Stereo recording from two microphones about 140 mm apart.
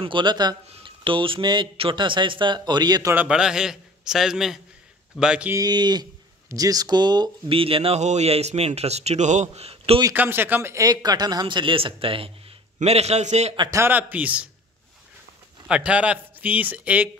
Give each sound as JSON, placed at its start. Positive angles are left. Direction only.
{"t": 0.0, "sound": "speech", "side_deg": -35}
{"t": 3.2, "sound": "a man's voice", "side_deg": -5}
{"t": 5.5, "sound": "a man's voice", "side_deg": -30}
{"t": 10.1, "sound": "a man's voice", "side_deg": -15}
{"t": 13.6, "sound": "speech", "side_deg": -20}
{"t": 15.7, "sound": "speech", "side_deg": -10}